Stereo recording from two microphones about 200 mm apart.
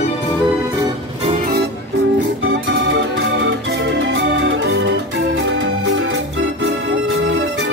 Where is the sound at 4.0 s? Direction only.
65° right (ahead or behind).